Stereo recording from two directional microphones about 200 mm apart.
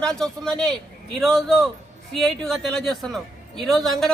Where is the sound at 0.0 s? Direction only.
5° left (ahead or behind).